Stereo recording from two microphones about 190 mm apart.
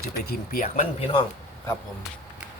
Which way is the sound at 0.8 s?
30° left (ahead or behind).